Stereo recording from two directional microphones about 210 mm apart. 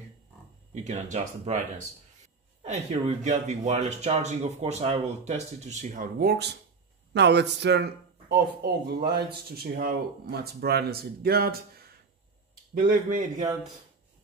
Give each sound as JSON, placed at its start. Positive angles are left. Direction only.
{"t": 0.8, "sound": "speech", "side_deg": -35}
{"t": 2.6, "sound": "speech", "side_deg": -35}
{"t": 12.7, "sound": "speech", "side_deg": -45}